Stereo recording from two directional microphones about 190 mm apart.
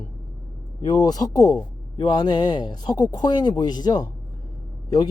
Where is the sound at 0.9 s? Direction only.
20° left (ahead or behind).